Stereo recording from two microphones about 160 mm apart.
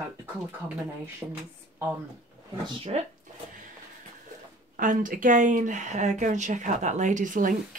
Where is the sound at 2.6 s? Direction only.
35° right (ahead or behind).